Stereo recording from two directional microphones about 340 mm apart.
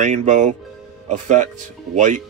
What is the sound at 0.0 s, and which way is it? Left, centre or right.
Speech, right.